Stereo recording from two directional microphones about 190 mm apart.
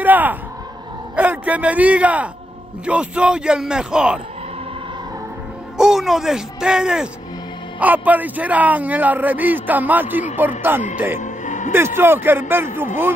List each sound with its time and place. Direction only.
0.0 s a sound: 10° right (ahead or behind)
1.1 s a man's voice: 10° right (ahead or behind)
5.8 s a man's voice: centre (ahead or behind)
11.1 s music: 40° left (ahead or behind)
11.7 s a man's voice: 10° right (ahead or behind)